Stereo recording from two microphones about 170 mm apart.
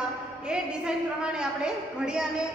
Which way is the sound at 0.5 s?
5° right (ahead or behind).